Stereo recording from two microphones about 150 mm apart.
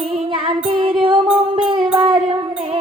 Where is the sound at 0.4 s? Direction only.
40° right (ahead or behind).